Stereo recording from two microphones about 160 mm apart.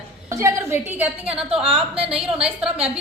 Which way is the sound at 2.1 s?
5° right (ahead or behind).